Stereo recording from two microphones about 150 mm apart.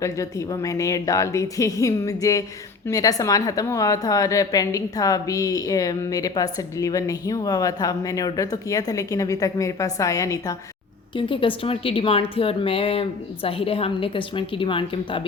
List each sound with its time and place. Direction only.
0.0 s a woman's voice: 20° left (ahead or behind)
11.1 s a woman's voice: 35° left (ahead or behind)